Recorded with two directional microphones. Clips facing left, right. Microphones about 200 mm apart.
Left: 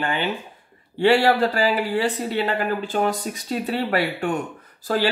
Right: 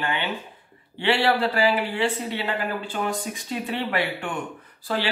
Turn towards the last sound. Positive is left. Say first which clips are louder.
# left 5 dB
turn(degrees=45)  # may be behind; listen again after turning